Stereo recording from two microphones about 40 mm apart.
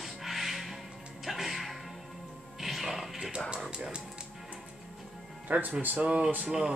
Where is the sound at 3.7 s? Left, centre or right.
Right.